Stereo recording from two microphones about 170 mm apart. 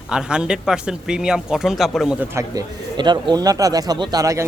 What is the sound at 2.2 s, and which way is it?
Speech, 20° right (ahead or behind).